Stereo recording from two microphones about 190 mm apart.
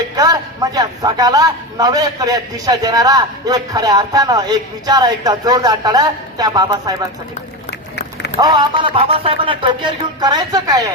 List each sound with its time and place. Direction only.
0.2 s a man's voice: 20° right (ahead or behind)
7.7 s a sound: 65° left (ahead or behind)
8.4 s a man's voice: 20° right (ahead or behind)